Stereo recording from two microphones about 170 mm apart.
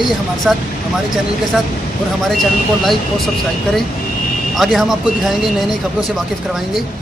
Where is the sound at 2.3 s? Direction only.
Centre (ahead or behind).